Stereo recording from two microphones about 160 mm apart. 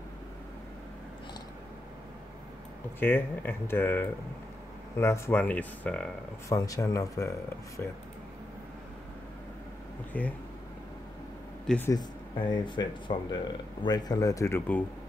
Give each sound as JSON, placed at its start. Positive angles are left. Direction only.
{"t": 3.0, "sound": "speech", "side_deg": 15}
{"t": 6.5, "sound": "speech", "side_deg": 20}
{"t": 10.1, "sound": "speech", "side_deg": 10}
{"t": 11.6, "sound": "speech", "side_deg": 5}
{"t": 11.9, "sound": "speech", "side_deg": 25}